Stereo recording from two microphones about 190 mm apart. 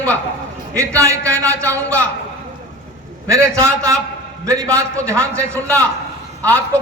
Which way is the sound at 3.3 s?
15° right (ahead or behind).